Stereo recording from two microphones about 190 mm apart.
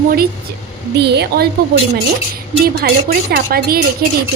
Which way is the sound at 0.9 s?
60° right (ahead or behind).